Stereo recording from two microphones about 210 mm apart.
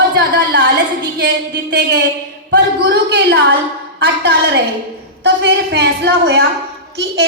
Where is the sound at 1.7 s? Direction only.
55° right (ahead or behind).